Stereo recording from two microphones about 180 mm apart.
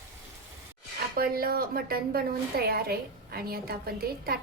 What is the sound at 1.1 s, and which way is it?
A woman's voice, 55° right (ahead or behind).